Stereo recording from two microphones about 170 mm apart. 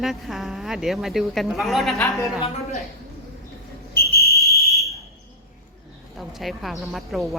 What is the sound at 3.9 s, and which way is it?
Whistle, 65° left (ahead or behind).